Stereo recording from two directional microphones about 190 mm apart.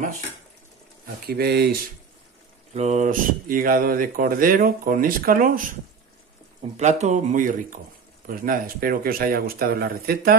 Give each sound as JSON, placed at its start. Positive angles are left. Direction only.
{"t": 1.2, "sound": "speech", "side_deg": -55}
{"t": 2.7, "sound": "speech", "side_deg": -35}
{"t": 6.8, "sound": "speech", "side_deg": -40}